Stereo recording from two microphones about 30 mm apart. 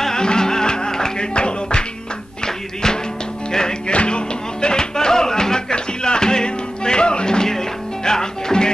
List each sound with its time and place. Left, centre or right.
0.0 s music: left
2.4 s music: left
3.9 s music: left